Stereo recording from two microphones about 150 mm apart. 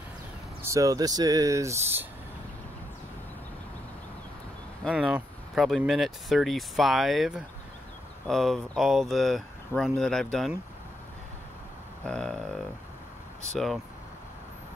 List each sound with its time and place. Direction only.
0.6 s speech: 20° right (ahead or behind)
4.9 s speech: 5° right (ahead or behind)
12.0 s speech: 5° left (ahead or behind)